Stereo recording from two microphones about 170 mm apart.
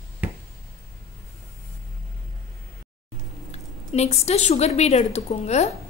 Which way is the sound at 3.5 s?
40° left (ahead or behind).